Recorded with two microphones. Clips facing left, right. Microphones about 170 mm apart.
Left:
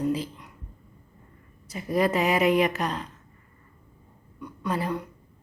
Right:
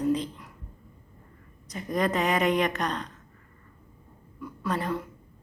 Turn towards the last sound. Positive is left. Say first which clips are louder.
# left 1 dB
turn(degrees=0)  # may be behind; listen again after turning